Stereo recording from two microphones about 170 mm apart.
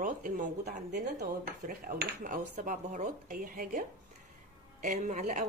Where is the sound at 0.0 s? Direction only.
50° right (ahead or behind).